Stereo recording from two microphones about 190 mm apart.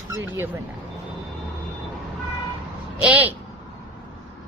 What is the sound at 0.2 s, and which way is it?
Speech, 10° right (ahead or behind).